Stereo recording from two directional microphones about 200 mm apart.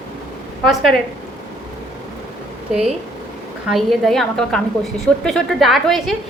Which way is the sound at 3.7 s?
Centre (ahead or behind).